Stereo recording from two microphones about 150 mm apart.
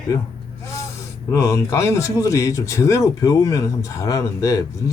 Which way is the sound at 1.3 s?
20° left (ahead or behind).